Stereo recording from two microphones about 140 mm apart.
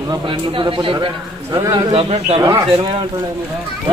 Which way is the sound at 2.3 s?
20° right (ahead or behind).